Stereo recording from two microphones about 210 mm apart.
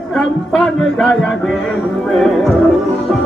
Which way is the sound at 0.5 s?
5° left (ahead or behind).